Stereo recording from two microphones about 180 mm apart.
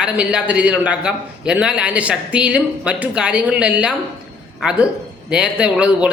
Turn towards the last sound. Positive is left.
turn(degrees=-5)  # may be behind; listen again after turning